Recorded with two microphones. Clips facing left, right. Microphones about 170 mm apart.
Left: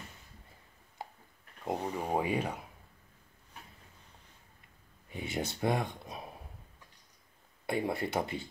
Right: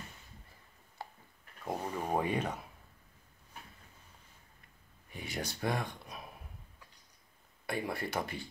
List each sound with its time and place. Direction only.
1.6 s speech: 15° left (ahead or behind)
5.1 s speech: 25° left (ahead or behind)
7.6 s speech: 20° left (ahead or behind)